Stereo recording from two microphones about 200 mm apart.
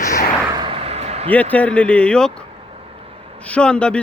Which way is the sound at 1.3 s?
5° left (ahead or behind).